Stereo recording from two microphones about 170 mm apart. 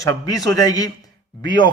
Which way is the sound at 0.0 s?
20° left (ahead or behind).